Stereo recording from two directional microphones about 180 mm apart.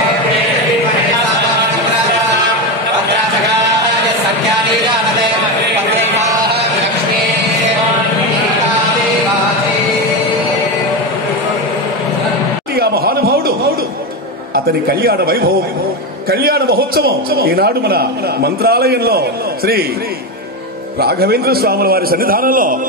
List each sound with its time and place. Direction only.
12.7 s a sound: 60° right (ahead or behind)
14.5 s a man's voice: 55° right (ahead or behind)
21.0 s a man's voice: 60° right (ahead or behind)